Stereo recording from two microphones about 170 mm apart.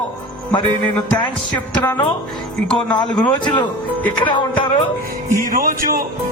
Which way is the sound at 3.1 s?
25° left (ahead or behind).